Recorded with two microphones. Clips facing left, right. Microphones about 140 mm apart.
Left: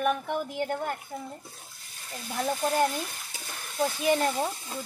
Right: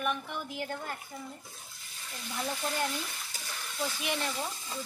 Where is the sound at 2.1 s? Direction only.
45° left (ahead or behind).